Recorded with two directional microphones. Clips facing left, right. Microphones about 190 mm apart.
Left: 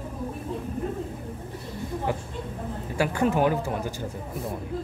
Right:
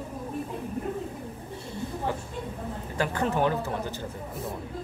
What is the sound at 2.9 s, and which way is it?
Speech, 10° left (ahead or behind).